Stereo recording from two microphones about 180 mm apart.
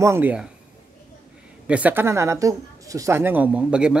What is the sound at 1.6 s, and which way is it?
A man's voice, 10° right (ahead or behind).